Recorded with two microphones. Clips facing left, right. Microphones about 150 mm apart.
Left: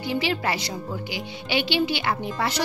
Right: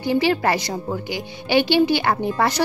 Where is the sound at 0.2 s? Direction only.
45° right (ahead or behind).